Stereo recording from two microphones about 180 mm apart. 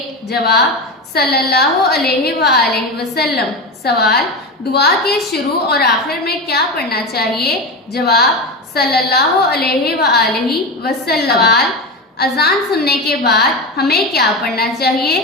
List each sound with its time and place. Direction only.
0.3 s a woman's voice: 65° left (ahead or behind)